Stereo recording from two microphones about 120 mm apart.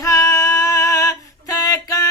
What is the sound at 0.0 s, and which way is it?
Female singing, 25° left (ahead or behind).